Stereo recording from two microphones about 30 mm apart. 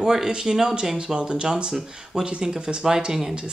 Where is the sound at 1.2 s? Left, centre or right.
Right.